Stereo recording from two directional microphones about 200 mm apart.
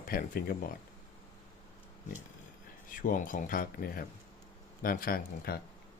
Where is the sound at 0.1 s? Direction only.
45° left (ahead or behind).